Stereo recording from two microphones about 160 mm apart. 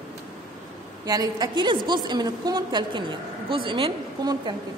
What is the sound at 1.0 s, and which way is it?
A woman's voice, 25° right (ahead or behind).